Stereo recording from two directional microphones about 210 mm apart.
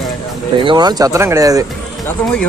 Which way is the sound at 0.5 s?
20° right (ahead or behind).